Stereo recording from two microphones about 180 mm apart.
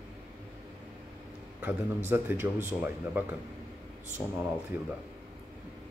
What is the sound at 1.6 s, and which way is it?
A man's voice, 15° right (ahead or behind).